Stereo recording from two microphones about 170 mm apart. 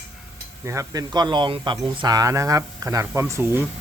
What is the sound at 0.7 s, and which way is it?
Speech, 20° right (ahead or behind).